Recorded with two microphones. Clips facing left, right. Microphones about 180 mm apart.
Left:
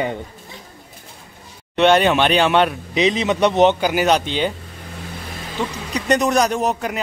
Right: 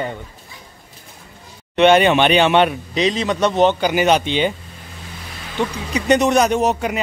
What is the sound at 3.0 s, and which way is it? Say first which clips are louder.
Speech: left 1 dB; 20° left (ahead or behind).